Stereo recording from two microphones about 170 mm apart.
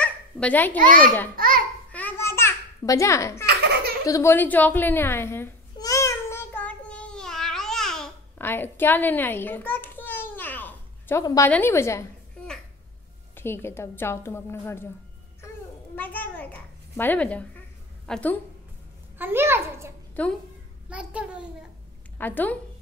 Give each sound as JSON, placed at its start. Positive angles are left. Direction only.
{"t": 0.0, "sound": "babbling", "side_deg": 10}
{"t": 0.7, "sound": "a child's voice", "side_deg": -50}
{"t": 1.3, "sound": "babbling", "side_deg": -55}
{"t": 1.9, "sound": "babbling", "side_deg": 10}
{"t": 4.0, "sound": "a sound", "side_deg": 20}
{"t": 11.5, "sound": "a woman's voice", "side_deg": 15}
{"t": 13.3, "sound": "a woman's voice", "side_deg": 15}
{"t": 16.0, "sound": "babbling", "side_deg": 10}
{"t": 18.0, "sound": "a woman's voice", "side_deg": 5}
{"t": 19.1, "sound": "a child's voice", "side_deg": -10}
{"t": 20.2, "sound": "a woman's voice", "side_deg": 10}
{"t": 20.9, "sound": "a child's voice", "side_deg": -5}
{"t": 22.2, "sound": "a woman's voice", "side_deg": 10}